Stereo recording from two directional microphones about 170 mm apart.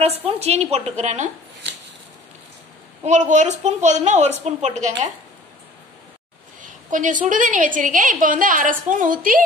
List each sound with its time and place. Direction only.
0.0 s a woman's voice: 35° right (ahead or behind)
3.0 s a woman's voice: 45° right (ahead or behind)
6.6 s a woman's voice: 50° right (ahead or behind)